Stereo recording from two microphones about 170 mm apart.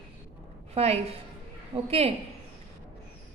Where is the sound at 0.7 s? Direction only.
40° right (ahead or behind).